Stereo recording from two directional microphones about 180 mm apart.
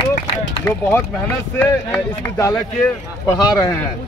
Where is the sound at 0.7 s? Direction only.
15° left (ahead or behind).